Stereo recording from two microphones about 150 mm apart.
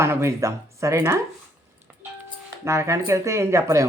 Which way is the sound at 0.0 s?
15° right (ahead or behind).